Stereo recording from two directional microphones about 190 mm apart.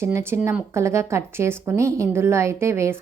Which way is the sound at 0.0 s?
15° right (ahead or behind).